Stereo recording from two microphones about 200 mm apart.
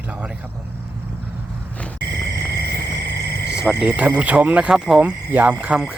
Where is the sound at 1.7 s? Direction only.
5° left (ahead or behind).